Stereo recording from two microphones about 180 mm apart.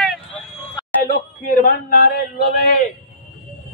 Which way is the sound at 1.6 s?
55° left (ahead or behind).